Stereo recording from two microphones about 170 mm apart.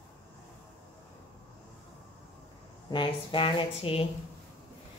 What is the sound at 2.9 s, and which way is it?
A woman's voice, 30° left (ahead or behind).